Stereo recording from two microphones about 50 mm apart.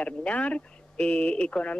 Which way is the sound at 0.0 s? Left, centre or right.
Left.